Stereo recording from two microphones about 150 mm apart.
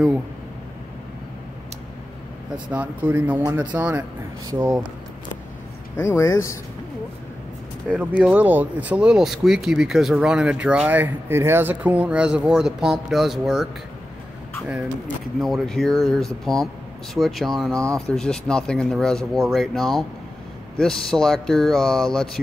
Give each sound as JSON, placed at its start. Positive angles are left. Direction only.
{"t": 2.7, "sound": "speech", "side_deg": -10}
{"t": 4.5, "sound": "speech", "side_deg": -20}
{"t": 5.9, "sound": "speech", "side_deg": 20}
{"t": 7.8, "sound": "speech", "side_deg": -5}
{"t": 15.4, "sound": "speech", "side_deg": 0}